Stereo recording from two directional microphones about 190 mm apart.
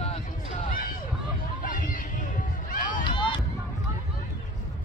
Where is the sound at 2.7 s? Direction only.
45° left (ahead or behind).